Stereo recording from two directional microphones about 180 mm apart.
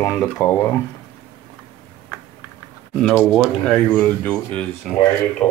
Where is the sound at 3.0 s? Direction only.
5° left (ahead or behind).